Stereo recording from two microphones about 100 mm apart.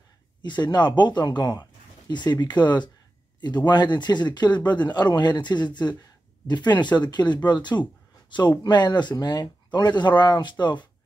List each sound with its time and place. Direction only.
0.4 s speech: 45° left (ahead or behind)